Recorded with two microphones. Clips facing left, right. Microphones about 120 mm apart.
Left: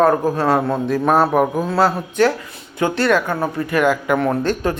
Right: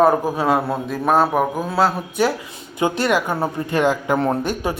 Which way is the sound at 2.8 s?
15° right (ahead or behind).